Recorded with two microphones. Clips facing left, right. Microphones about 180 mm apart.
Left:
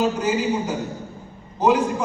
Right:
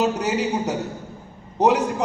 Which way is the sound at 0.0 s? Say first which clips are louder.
Even; 70° right (ahead or behind).